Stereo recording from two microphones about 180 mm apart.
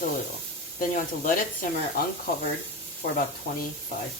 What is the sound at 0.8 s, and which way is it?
Speech, 45° left (ahead or behind).